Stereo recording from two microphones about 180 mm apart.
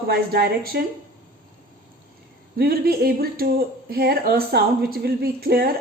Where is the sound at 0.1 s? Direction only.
60° right (ahead or behind).